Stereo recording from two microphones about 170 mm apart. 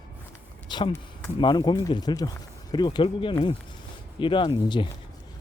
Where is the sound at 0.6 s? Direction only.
25° left (ahead or behind).